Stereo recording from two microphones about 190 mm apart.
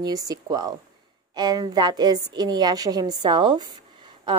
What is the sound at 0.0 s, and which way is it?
Speech, 20° right (ahead or behind).